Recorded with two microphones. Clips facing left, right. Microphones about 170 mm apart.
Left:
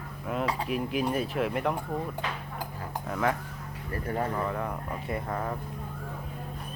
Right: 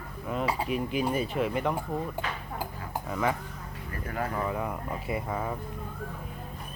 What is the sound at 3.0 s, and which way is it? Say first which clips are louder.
Speech: left 1 dB; centre (ahead or behind).